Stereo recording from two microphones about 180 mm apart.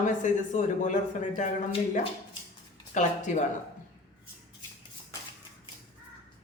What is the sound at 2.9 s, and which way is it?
Speech, 45° left (ahead or behind).